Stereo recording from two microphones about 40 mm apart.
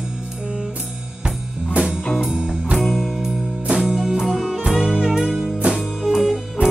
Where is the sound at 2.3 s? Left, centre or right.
Right.